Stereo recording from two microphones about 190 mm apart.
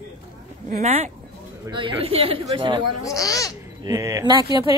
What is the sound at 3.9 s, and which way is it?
Speech, 15° right (ahead or behind).